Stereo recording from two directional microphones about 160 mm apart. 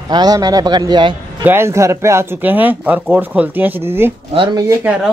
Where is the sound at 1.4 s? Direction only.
15° right (ahead or behind).